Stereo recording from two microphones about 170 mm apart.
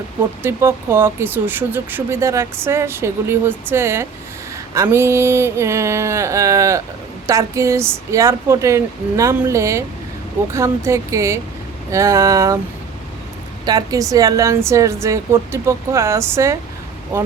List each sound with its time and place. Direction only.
0.4 s speech: 15° right (ahead or behind)
13.7 s a woman's voice: 20° right (ahead or behind)